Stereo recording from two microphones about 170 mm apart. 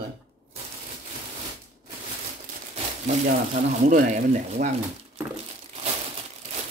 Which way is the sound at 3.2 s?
50° right (ahead or behind).